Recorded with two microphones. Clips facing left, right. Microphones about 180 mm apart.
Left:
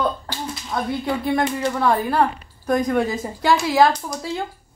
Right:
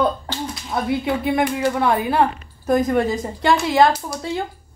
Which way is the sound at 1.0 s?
Centre (ahead or behind).